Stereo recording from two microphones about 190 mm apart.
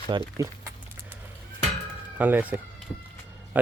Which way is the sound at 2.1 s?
10° right (ahead or behind).